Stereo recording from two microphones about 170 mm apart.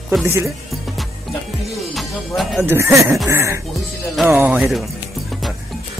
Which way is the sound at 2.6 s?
15° right (ahead or behind).